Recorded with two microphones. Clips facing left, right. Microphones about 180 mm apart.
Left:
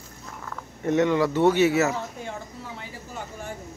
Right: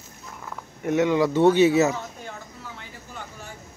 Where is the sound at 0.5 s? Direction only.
10° right (ahead or behind).